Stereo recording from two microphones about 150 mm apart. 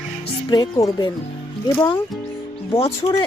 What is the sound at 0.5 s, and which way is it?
Speech, 25° left (ahead or behind).